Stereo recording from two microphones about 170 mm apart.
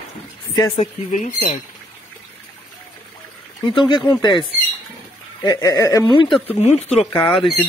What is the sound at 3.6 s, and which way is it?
Speech, 30° left (ahead or behind).